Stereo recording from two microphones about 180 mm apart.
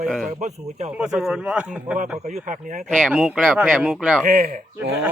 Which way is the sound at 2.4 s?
45° right (ahead or behind).